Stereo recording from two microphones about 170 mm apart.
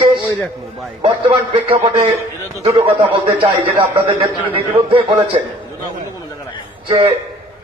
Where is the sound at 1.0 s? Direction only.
30° right (ahead or behind).